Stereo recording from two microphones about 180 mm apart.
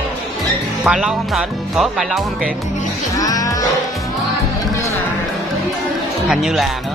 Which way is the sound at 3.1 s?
20° left (ahead or behind).